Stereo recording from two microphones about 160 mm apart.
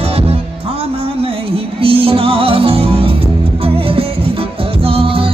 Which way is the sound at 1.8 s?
35° right (ahead or behind).